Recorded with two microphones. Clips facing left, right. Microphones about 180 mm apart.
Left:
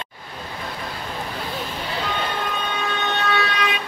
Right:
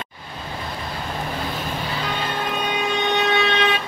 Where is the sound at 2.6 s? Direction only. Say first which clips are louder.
Right 3 dB; 15° right (ahead or behind).